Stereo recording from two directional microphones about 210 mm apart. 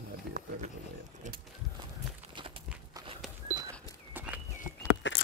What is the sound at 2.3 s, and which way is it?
Horse, 25° right (ahead or behind).